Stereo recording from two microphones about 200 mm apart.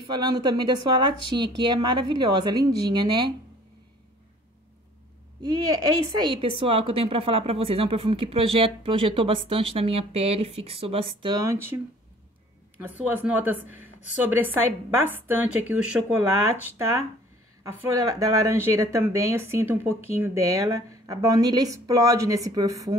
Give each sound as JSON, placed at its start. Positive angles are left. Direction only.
{"t": 0.1, "sound": "a woman's voice", "side_deg": -20}
{"t": 5.5, "sound": "a woman's voice", "side_deg": -20}